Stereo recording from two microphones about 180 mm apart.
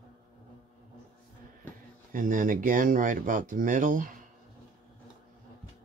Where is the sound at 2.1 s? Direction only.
50° right (ahead or behind).